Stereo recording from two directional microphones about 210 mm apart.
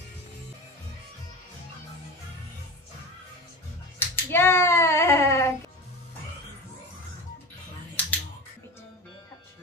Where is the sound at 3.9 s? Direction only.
10° left (ahead or behind).